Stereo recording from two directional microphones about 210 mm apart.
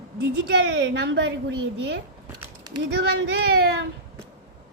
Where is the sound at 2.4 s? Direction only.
20° right (ahead or behind).